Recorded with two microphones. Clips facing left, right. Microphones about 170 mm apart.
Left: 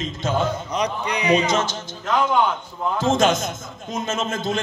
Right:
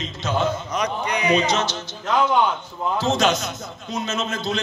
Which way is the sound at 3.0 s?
50° left (ahead or behind).